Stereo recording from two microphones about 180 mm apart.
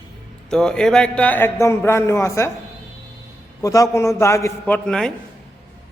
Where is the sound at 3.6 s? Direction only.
20° left (ahead or behind).